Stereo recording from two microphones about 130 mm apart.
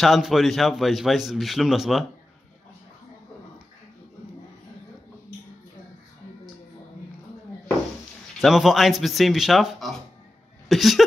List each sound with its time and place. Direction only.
0.0 s a man's voice: centre (ahead or behind)
8.4 s a man's voice: centre (ahead or behind)